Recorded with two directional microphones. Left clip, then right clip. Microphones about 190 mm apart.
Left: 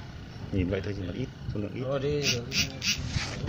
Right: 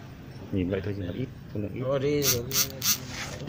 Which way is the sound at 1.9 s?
45° right (ahead or behind).